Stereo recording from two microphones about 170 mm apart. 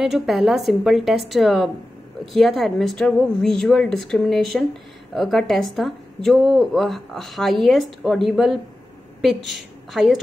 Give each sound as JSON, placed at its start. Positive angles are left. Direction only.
{"t": 0.0, "sound": "a woman's voice", "side_deg": 0}